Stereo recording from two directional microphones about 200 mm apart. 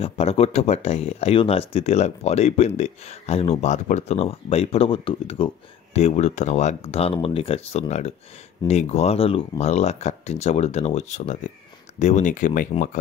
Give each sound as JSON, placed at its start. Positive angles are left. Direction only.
{"t": 0.0, "sound": "speech", "side_deg": 30}